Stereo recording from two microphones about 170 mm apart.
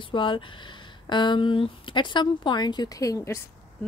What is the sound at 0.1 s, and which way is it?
Speech, 30° left (ahead or behind).